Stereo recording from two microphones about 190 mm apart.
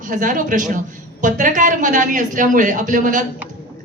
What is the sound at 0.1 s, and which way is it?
A woman's voice, 40° right (ahead or behind).